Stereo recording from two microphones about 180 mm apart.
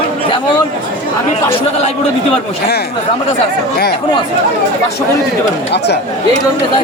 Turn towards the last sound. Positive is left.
turn(degrees=70)  # may be behind; listen again after turning